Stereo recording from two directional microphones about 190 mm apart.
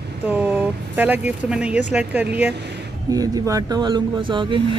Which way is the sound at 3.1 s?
20° right (ahead or behind).